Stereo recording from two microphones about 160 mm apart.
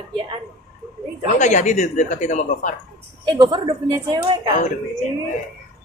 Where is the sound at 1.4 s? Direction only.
50° left (ahead or behind).